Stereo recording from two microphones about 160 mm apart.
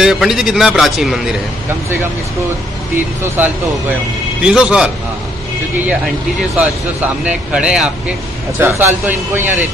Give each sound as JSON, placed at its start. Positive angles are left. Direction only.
{"t": 0.0, "sound": "a man's voice", "side_deg": 0}
{"t": 3.4, "sound": "a man's voice", "side_deg": -10}
{"t": 7.2, "sound": "a man's voice", "side_deg": -5}